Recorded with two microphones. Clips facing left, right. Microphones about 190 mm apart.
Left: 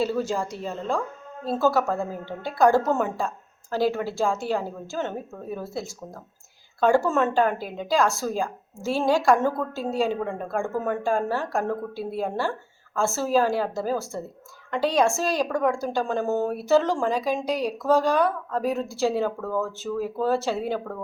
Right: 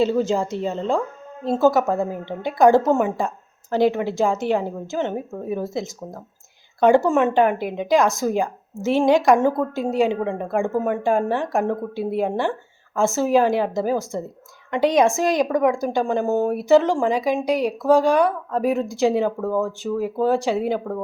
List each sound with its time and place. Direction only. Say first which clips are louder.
0.0 s a woman's voice: right 6 dB; 20° right (ahead or behind)